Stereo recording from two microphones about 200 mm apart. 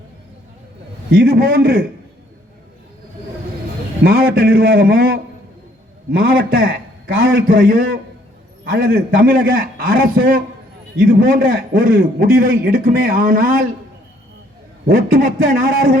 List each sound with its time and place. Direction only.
1.2 s a man's voice: 45° right (ahead or behind)
4.0 s a man's voice: 50° right (ahead or behind)
14.8 s a man's voice: 45° right (ahead or behind)